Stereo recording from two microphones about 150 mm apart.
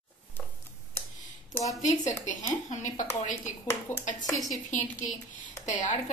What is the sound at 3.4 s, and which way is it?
Speech, 15° left (ahead or behind).